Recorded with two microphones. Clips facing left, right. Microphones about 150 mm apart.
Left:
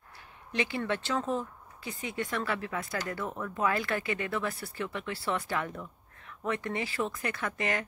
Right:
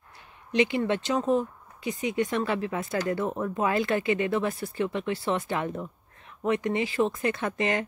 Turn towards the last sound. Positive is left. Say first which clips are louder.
# right 5 dB
turn(degrees=-20)  # may be behind; listen again after turning